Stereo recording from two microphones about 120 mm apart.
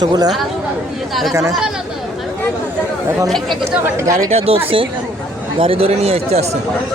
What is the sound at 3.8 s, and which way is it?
Speech, 25° right (ahead or behind).